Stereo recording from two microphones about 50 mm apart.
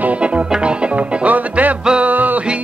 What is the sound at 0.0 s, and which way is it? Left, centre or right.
Music, right.